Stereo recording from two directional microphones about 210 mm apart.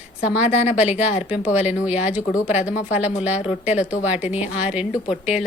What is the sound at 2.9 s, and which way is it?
A woman's voice, 5° right (ahead or behind).